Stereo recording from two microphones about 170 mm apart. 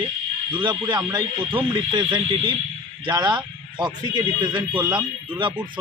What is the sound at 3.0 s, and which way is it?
A man's voice, 25° right (ahead or behind).